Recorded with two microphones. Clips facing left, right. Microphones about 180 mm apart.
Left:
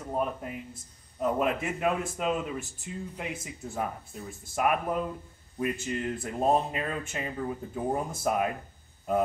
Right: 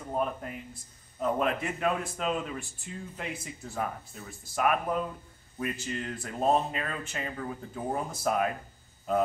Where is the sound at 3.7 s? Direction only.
15° left (ahead or behind).